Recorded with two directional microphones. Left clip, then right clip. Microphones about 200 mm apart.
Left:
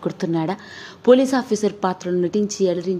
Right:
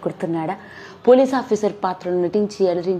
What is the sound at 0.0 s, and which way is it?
A woman's voice, 25° left (ahead or behind).